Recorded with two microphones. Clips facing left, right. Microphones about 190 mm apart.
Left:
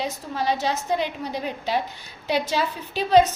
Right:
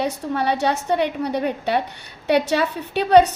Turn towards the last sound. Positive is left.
turn(degrees=-65)  # may be behind; listen again after turning